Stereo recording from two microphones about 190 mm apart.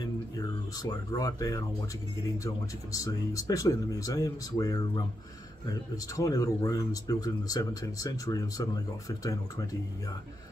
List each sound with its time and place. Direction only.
0.0 s a sound: 20° left (ahead or behind)
2.3 s speech: 15° left (ahead or behind)
6.1 s speech: 15° left (ahead or behind)